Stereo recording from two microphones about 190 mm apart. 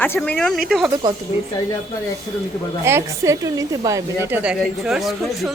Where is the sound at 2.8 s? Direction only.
15° right (ahead or behind).